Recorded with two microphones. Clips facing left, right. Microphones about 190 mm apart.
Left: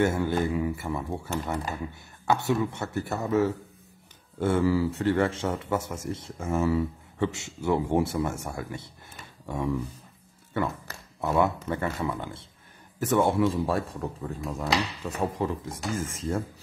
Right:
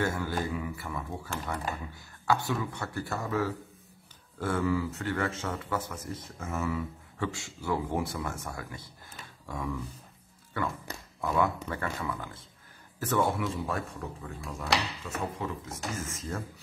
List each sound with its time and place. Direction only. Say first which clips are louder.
0.0 s a man's voice: left 6 dB; 25° left (ahead or behind)